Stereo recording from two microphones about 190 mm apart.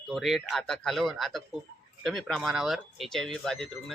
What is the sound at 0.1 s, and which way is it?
Speech, centre (ahead or behind).